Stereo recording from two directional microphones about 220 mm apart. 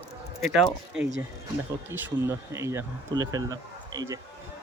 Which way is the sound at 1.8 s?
10° right (ahead or behind).